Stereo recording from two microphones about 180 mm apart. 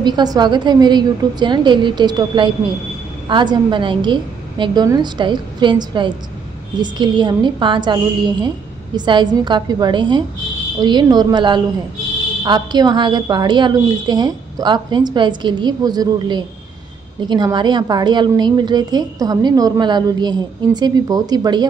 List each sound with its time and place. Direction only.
0.0 s a woman's voice: 25° right (ahead or behind)